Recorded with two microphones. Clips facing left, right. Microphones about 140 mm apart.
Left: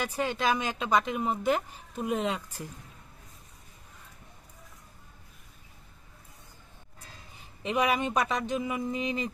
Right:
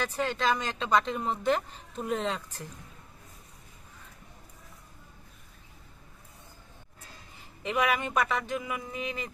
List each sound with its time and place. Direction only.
0.0 s speech: 15° left (ahead or behind)
7.3 s speech: 20° left (ahead or behind)